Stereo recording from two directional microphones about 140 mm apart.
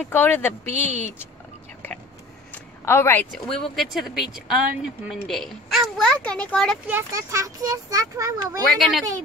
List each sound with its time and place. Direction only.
0.0 s speech: 15° left (ahead or behind)
0.7 s speech: 55° right (ahead or behind)
2.5 s a sound: 20° left (ahead or behind)
3.3 s speech: 5° left (ahead or behind)
6.9 s a child's voice: 20° right (ahead or behind)
8.7 s speech: centre (ahead or behind)